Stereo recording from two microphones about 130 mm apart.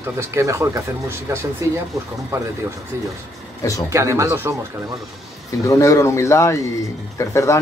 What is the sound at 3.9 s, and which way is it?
Speech, 25° right (ahead or behind).